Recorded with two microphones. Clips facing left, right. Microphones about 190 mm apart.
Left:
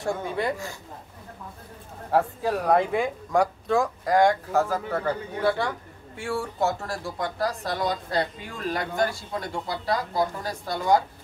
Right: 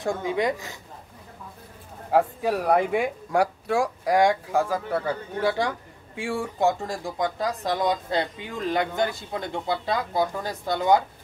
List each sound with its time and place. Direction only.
0.0 s speech: 15° right (ahead or behind)
2.0 s speech: 10° right (ahead or behind)